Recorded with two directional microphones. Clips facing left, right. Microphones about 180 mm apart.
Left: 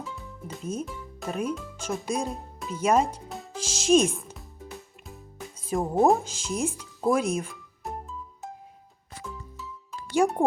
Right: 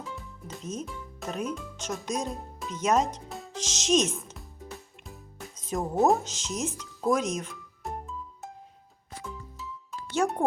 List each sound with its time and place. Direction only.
0.4 s speech: 10° left (ahead or behind)
5.0 s music: centre (ahead or behind)
5.8 s speech: 15° left (ahead or behind)
6.1 s music: 10° left (ahead or behind)
10.2 s music: 10° left (ahead or behind)